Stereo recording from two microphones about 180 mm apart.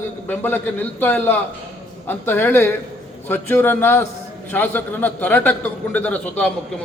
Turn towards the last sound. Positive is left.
turn(degrees=10)  # may be behind; listen again after turning